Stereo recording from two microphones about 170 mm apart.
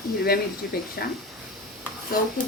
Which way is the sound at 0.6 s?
65° left (ahead or behind).